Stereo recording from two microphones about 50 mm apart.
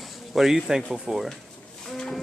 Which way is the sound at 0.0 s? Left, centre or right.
Centre.